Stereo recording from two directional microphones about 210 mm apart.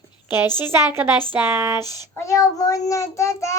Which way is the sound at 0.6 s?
10° right (ahead or behind).